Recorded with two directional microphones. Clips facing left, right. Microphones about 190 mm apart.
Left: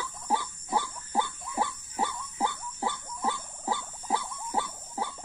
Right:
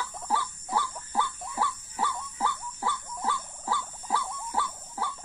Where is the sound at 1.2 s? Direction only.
15° left (ahead or behind).